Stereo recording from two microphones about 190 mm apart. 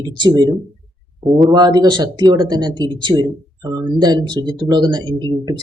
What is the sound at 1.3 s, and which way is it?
Speech, centre (ahead or behind).